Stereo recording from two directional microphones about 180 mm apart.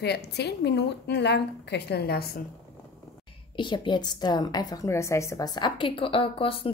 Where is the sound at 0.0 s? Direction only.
65° left (ahead or behind).